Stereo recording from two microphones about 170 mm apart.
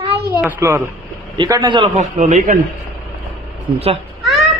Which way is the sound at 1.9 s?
45° right (ahead or behind).